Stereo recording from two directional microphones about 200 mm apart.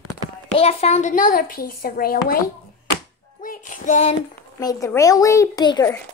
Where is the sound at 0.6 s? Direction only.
30° left (ahead or behind); by 2.3 s 45° left (ahead or behind).